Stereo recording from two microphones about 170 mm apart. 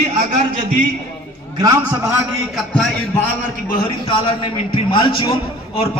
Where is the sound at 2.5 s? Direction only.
Centre (ahead or behind).